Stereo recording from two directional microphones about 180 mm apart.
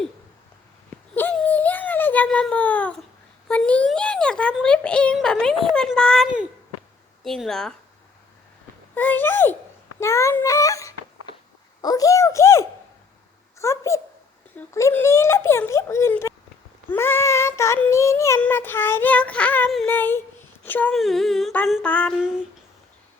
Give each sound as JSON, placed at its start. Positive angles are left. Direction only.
{"t": 1.1, "sound": "a sound", "side_deg": 10}
{"t": 3.5, "sound": "a child's voice", "side_deg": 5}
{"t": 7.3, "sound": "speech", "side_deg": 0}
{"t": 9.0, "sound": "child singing", "side_deg": 10}
{"t": 10.0, "sound": "speech", "side_deg": 15}
{"t": 11.8, "sound": "child singing", "side_deg": 20}
{"t": 20.7, "sound": "speech", "side_deg": 10}
{"t": 21.7, "sound": "child singing", "side_deg": 5}